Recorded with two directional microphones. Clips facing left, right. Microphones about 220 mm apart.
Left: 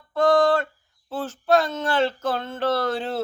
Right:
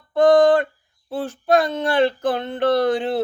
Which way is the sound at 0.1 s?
15° right (ahead or behind).